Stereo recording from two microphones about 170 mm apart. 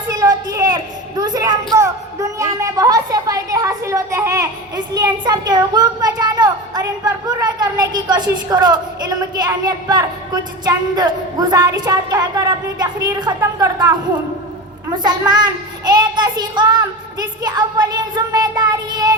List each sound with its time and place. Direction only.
0.1 s a sound: 20° right (ahead or behind)
4.9 s a child's voice: 25° right (ahead or behind)
15.3 s a woman's voice: 25° right (ahead or behind)